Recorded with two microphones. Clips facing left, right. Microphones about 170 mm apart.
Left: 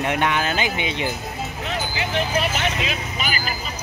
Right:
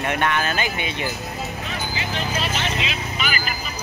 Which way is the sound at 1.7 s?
60° left (ahead or behind).